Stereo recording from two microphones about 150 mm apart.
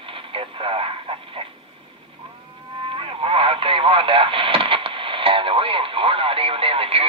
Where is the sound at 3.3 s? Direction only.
35° right (ahead or behind).